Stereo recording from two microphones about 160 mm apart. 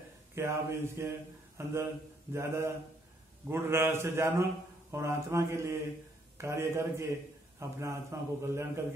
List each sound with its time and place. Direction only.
0.3 s a man's voice: 15° right (ahead or behind)